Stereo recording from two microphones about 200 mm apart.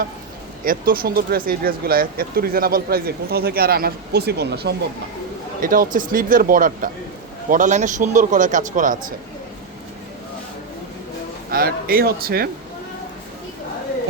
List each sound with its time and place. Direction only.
0.6 s speech: 45° right (ahead or behind)
5.6 s a man's voice: 45° right (ahead or behind)
11.5 s speech: 50° right (ahead or behind)